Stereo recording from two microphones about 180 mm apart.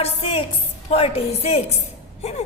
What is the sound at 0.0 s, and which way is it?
A woman's voice, 30° left (ahead or behind).